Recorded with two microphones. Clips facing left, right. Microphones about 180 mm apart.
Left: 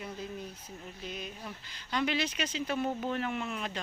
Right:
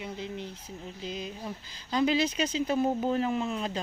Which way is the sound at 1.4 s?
30° right (ahead or behind).